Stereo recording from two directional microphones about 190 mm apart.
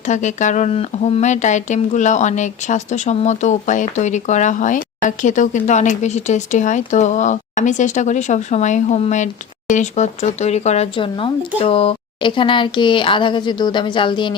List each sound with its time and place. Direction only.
0.0 s speech: 40° left (ahead or behind)